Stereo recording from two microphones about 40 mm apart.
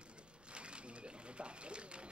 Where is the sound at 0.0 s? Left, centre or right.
Right.